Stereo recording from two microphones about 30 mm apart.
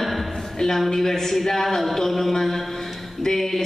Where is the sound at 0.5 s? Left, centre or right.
Centre.